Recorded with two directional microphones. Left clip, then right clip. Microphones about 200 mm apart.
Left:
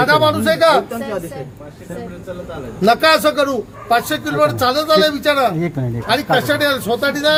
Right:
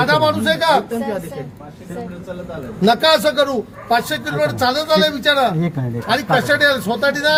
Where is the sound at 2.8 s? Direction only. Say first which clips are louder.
Left 1 dB; 10° left (ahead or behind).